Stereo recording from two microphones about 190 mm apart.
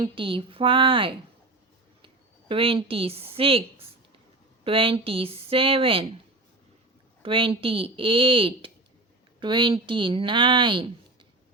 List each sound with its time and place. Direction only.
0.0 s speech: 25° right (ahead or behind)
2.5 s speech: 30° right (ahead or behind)
7.2 s speech: 30° right (ahead or behind)